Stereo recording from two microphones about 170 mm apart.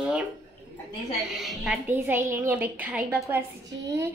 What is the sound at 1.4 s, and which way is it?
Speech, centre (ahead or behind).